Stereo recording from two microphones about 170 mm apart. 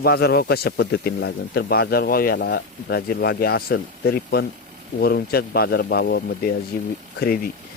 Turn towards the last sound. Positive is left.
turn(degrees=60)  # may be behind; listen again after turning